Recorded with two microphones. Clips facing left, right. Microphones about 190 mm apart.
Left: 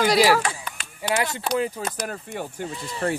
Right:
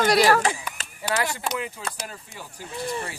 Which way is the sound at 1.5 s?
35° left (ahead or behind).